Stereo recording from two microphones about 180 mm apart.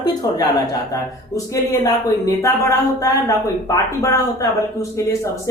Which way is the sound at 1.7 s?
20° left (ahead or behind).